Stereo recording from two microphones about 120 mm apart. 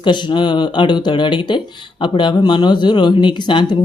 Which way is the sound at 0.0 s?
40° left (ahead or behind).